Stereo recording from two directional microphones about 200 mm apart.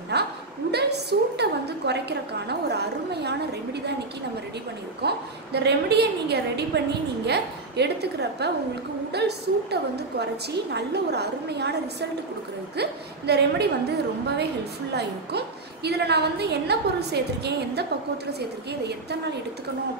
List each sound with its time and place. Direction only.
0.1 s a sound: 55° right (ahead or behind)
5.0 s a woman's voice: 55° right (ahead or behind)
13.3 s a woman's voice: 55° right (ahead or behind)
15.0 s a woman's voice: 55° right (ahead or behind)